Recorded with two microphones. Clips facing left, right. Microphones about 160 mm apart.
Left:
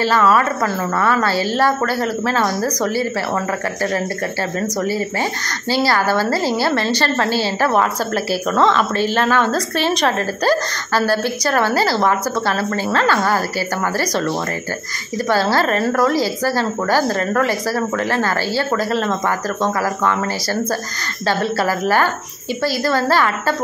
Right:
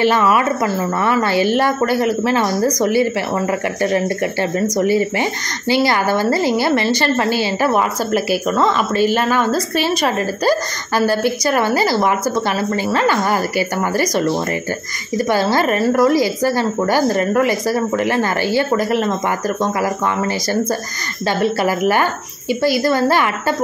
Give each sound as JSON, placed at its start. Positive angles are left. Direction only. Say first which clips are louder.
{"t": 0.0, "sound": "a woman's voice", "louder": "right 1 dB", "side_deg": -15}
{"t": 4.7, "sound": "a woman's voice", "louder": "right 6 dB", "side_deg": -20}
{"t": 21.3, "sound": "a woman's voice", "louder": "right 2 dB", "side_deg": -15}